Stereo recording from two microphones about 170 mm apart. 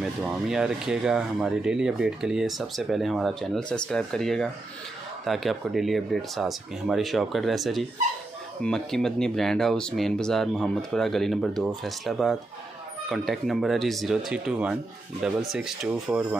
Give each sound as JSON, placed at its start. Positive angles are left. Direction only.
{"t": 0.2, "sound": "speech", "side_deg": -5}